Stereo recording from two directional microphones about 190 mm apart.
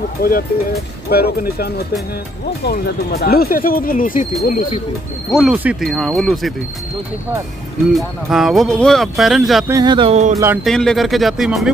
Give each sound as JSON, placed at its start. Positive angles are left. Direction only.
{"t": 0.2, "sound": "speech", "side_deg": 50}
{"t": 5.4, "sound": "speech", "side_deg": -5}
{"t": 7.9, "sound": "speech", "side_deg": 0}
{"t": 9.7, "sound": "speech", "side_deg": -20}
{"t": 10.3, "sound": "speech", "side_deg": -15}
{"t": 10.6, "sound": "speech", "side_deg": 0}